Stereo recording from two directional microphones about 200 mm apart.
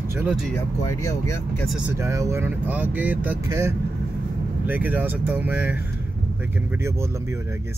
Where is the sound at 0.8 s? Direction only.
15° left (ahead or behind).